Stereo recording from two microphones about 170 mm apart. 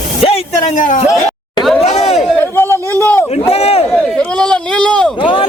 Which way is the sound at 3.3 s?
35° left (ahead or behind).